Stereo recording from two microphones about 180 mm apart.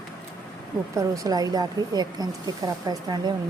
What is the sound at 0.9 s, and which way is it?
Speech, 20° right (ahead or behind).